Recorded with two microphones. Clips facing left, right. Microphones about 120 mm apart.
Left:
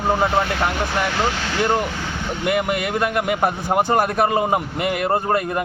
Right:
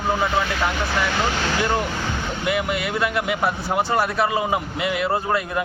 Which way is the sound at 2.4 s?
50° left (ahead or behind).